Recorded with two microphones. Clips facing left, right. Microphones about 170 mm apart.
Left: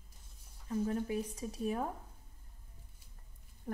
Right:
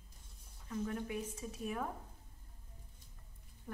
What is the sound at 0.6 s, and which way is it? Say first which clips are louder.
A woman's voice: left 5 dB; 35° left (ahead or behind).